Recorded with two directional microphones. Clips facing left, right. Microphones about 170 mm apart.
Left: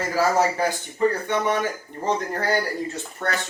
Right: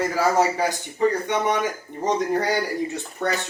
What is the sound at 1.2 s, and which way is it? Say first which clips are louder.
Speech: even; 15° right (ahead or behind).